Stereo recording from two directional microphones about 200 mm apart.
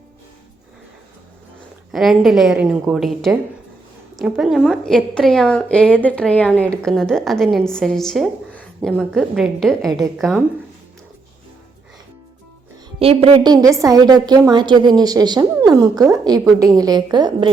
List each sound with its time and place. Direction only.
1.9 s a woman's voice: centre (ahead or behind)
13.0 s a woman's voice: 30° right (ahead or behind)